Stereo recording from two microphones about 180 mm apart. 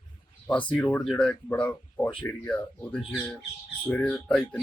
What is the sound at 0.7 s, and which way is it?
Speech, 10° left (ahead or behind).